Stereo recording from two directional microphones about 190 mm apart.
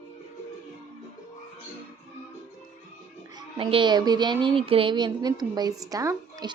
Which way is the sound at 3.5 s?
25° right (ahead or behind).